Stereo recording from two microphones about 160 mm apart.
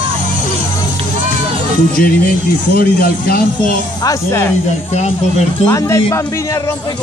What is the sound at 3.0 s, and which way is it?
Speech, 70° left (ahead or behind).